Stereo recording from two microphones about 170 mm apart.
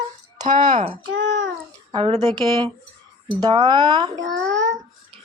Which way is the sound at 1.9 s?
30° right (ahead or behind).